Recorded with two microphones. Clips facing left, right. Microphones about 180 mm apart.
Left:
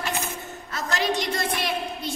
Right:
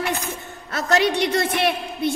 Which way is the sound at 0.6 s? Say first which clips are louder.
Right 7 dB; 65° right (ahead or behind).